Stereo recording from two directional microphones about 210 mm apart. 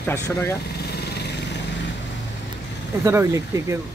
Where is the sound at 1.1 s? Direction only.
55° left (ahead or behind).